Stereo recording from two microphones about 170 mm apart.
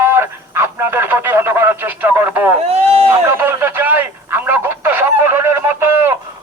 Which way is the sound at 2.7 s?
35° right (ahead or behind).